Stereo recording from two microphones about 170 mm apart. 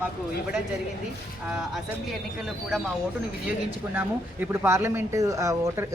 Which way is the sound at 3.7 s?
10° right (ahead or behind).